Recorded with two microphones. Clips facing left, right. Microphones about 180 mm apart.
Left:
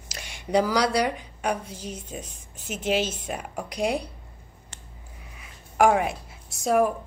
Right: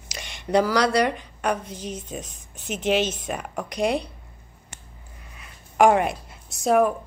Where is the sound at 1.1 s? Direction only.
65° right (ahead or behind).